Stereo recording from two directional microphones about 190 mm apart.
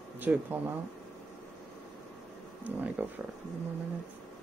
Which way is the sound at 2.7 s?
10° right (ahead or behind).